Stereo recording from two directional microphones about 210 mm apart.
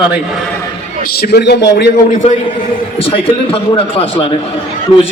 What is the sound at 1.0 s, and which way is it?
A man's voice, 45° left (ahead or behind).